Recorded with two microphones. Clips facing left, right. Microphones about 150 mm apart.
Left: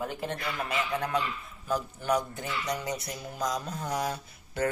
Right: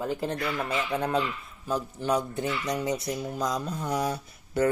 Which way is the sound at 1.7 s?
30° right (ahead or behind).